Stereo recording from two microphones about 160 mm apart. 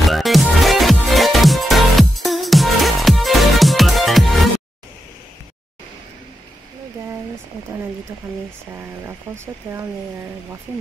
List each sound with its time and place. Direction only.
0.0 s music: centre (ahead or behind)
8.7 s speech: 15° right (ahead or behind)